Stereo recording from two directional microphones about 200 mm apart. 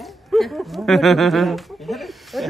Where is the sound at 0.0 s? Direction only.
Centre (ahead or behind).